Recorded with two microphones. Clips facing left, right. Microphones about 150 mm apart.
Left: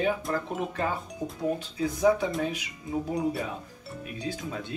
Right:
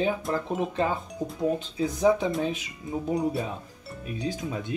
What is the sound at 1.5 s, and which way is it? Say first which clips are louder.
Speech: right 2 dB; 20° right (ahead or behind).